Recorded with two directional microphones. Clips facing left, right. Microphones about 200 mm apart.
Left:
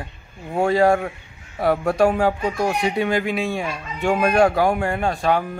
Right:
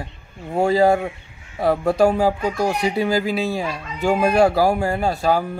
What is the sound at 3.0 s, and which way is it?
Speech, 30° right (ahead or behind).